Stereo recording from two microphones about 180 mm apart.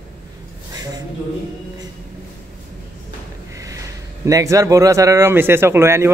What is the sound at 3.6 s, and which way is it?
A man's voice, 15° right (ahead or behind).